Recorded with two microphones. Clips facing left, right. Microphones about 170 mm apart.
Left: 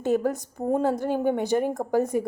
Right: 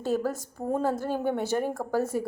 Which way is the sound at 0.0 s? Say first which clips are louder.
Left 4 dB; 20° left (ahead or behind).